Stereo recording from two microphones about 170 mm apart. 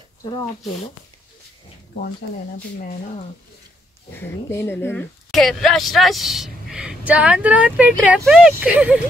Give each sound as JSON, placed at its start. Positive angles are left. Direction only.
{"t": 0.2, "sound": "speech", "side_deg": 25}
{"t": 2.8, "sound": "speech", "side_deg": 45}
{"t": 4.1, "sound": "speech", "side_deg": 15}